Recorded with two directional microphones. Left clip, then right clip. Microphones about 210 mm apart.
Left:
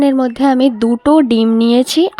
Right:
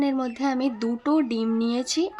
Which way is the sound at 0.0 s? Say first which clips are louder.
Left 13 dB; 35° left (ahead or behind).